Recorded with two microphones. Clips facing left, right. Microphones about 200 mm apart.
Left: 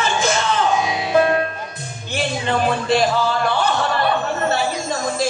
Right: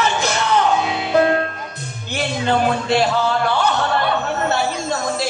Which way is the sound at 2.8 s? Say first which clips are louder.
Even; 65° right (ahead or behind).